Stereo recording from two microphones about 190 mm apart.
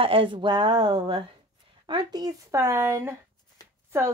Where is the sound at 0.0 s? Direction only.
30° right (ahead or behind).